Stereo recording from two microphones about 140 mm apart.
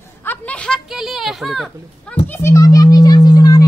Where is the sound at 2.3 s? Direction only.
20° left (ahead or behind).